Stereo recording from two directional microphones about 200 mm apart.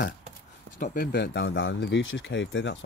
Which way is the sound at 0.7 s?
45° left (ahead or behind).